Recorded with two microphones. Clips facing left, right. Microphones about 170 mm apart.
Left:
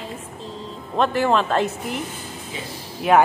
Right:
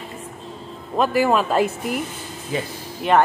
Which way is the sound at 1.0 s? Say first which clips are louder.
Right 1 dB; 10° right (ahead or behind).